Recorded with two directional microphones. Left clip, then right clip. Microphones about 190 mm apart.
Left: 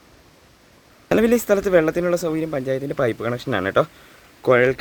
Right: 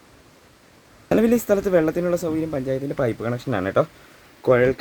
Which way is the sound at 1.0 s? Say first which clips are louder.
Left 2 dB; centre (ahead or behind).